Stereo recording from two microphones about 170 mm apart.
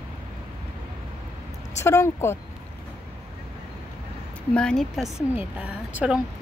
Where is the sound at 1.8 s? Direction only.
15° left (ahead or behind).